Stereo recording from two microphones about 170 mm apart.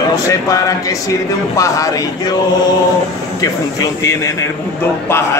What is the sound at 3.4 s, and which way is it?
Mantra, 20° left (ahead or behind).